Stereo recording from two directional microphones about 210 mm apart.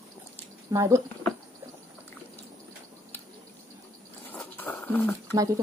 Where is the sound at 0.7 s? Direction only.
15° right (ahead or behind).